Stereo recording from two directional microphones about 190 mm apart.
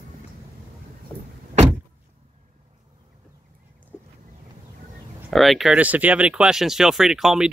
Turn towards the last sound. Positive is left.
turn(degrees=0)  # may be behind; listen again after turning